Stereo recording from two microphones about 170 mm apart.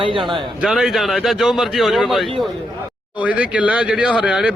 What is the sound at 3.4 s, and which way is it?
Speech, 10° right (ahead or behind).